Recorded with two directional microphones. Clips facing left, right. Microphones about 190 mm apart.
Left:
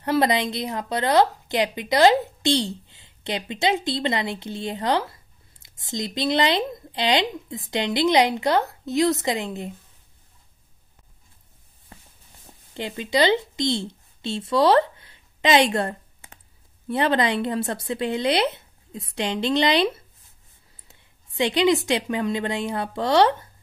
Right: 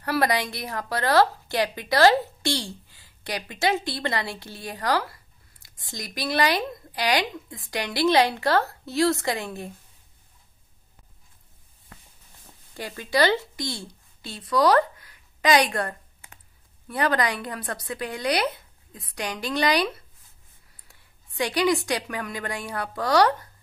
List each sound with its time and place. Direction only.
0.0 s a woman's voice: 20° left (ahead or behind)
12.7 s a woman's voice: 20° left (ahead or behind)